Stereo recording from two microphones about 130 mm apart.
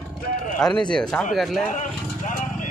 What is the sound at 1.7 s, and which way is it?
Vehicle, 75° left (ahead or behind).